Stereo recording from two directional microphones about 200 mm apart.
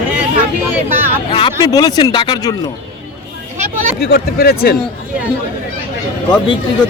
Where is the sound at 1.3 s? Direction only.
20° left (ahead or behind).